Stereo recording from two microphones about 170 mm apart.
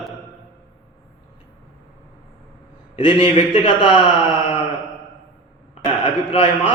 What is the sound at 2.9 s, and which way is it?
A man's voice, 30° left (ahead or behind).